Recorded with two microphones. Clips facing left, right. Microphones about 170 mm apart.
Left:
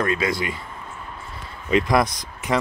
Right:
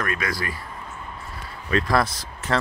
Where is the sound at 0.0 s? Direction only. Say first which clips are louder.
Left 5 dB; 25° left (ahead or behind).